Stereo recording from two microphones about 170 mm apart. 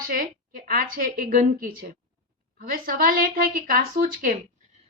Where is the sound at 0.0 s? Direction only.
60° right (ahead or behind).